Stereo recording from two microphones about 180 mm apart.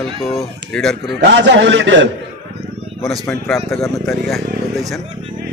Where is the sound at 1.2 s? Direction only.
75° right (ahead or behind).